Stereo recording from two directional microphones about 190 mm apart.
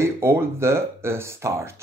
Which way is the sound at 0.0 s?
15° right (ahead or behind).